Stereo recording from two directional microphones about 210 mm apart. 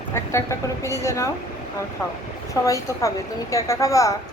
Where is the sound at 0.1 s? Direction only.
10° left (ahead or behind).